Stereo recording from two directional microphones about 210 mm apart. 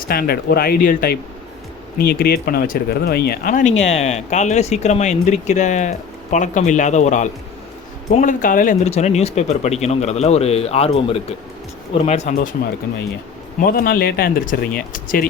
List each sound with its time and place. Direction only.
0.1 s speech: 45° left (ahead or behind)
13.7 s speech: 45° left (ahead or behind)